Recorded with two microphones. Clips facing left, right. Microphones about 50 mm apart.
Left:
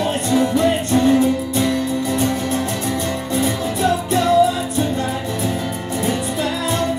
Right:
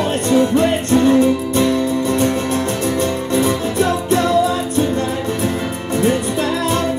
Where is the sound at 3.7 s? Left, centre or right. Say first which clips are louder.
Even; right.